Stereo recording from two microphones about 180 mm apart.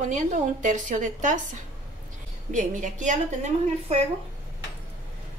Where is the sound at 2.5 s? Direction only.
45° right (ahead or behind).